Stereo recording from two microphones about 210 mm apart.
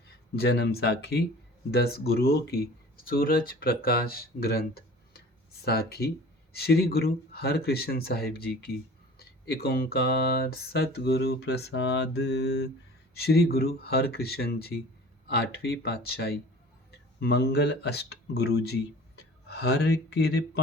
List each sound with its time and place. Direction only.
0.3 s speech: 50° left (ahead or behind)